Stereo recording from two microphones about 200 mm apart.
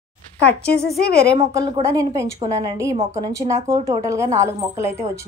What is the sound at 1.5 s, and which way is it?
A woman's voice, 15° right (ahead or behind).